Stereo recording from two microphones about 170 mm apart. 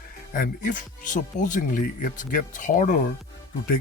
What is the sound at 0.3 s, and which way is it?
Speech, 55° left (ahead or behind).